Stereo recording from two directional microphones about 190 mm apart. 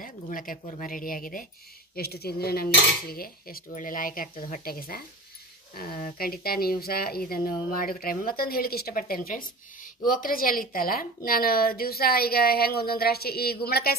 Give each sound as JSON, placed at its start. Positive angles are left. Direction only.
{"t": 0.0, "sound": "speech", "side_deg": 45}